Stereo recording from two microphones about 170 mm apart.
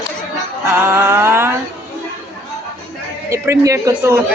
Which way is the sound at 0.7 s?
15° right (ahead or behind).